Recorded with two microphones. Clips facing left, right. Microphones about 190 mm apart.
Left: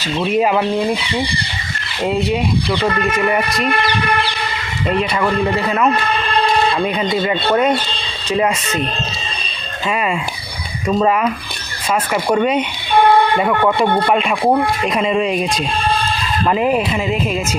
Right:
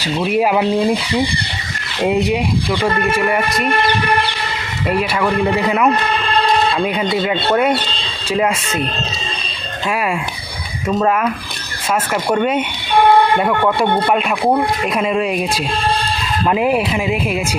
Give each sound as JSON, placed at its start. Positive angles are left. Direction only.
{"t": 0.0, "sound": "speech", "side_deg": -10}
{"t": 2.0, "sound": "speech", "side_deg": -20}
{"t": 4.9, "sound": "speech", "side_deg": -10}
{"t": 9.9, "sound": "speech", "side_deg": -5}